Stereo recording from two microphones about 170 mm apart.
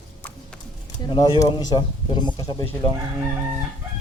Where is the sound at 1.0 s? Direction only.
25° left (ahead or behind).